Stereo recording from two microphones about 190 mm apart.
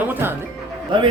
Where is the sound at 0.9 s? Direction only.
25° right (ahead or behind).